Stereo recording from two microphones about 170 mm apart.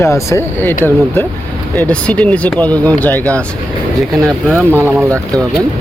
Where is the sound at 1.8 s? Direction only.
5° left (ahead or behind).